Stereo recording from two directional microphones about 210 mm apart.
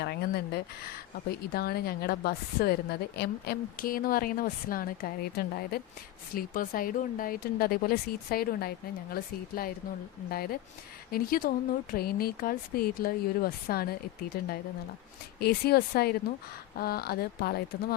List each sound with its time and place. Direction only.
0.0 s a woman's voice: 50° left (ahead or behind)